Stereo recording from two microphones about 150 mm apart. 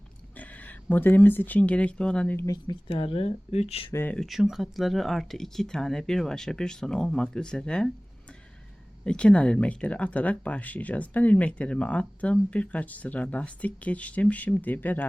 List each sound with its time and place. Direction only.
0.3 s speech: 10° left (ahead or behind)
2.5 s speech: 35° left (ahead or behind)
3.9 s speech: 10° left (ahead or behind)
4.3 s speech: centre (ahead or behind)
9.0 s speech: 5° left (ahead or behind)